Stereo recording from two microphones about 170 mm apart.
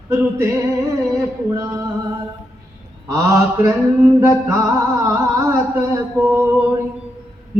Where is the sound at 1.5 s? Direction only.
20° right (ahead or behind).